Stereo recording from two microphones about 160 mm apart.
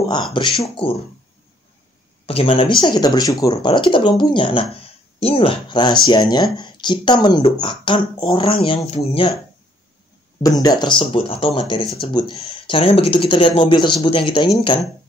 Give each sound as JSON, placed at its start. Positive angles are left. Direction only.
{"t": 0.1, "sound": "speech", "side_deg": 30}
{"t": 2.2, "sound": "speech", "side_deg": 35}
{"t": 10.4, "sound": "speech", "side_deg": 20}